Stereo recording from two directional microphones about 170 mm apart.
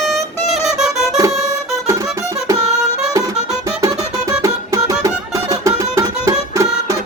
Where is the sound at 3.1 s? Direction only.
20° right (ahead or behind).